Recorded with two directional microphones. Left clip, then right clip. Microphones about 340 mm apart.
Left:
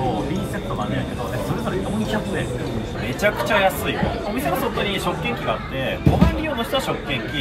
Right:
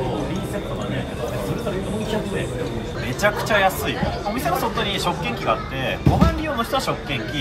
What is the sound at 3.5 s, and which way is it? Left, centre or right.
Speech, centre.